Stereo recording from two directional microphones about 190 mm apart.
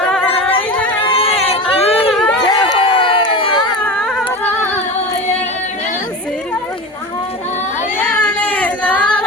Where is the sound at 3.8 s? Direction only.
5° left (ahead or behind).